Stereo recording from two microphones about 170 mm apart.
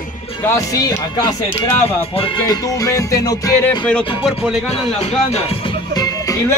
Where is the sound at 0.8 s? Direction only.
20° left (ahead or behind).